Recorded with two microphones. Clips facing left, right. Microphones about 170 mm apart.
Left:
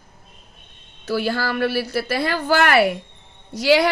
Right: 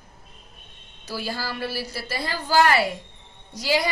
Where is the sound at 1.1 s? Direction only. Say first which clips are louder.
Left 8 dB; 65° left (ahead or behind).